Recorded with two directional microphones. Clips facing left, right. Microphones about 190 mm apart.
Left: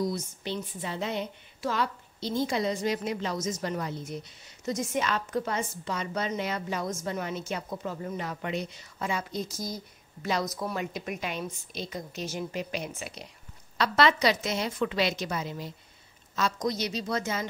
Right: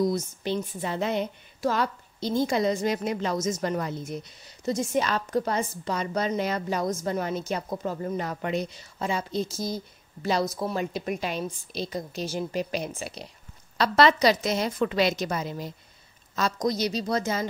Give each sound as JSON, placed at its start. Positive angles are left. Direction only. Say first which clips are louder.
{"t": 0.0, "sound": "a woman's voice", "louder": "right 5 dB", "side_deg": -45}
{"t": 4.6, "sound": "a woman's voice", "louder": "right 4 dB", "side_deg": -35}